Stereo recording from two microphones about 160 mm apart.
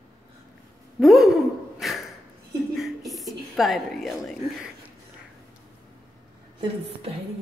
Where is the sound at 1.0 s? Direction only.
Centre (ahead or behind).